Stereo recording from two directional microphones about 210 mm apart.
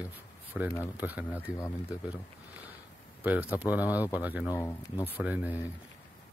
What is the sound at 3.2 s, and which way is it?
Speech, 10° right (ahead or behind).